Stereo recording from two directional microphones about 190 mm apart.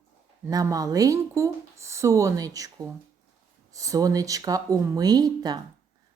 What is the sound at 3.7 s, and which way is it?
Speech, 15° right (ahead or behind).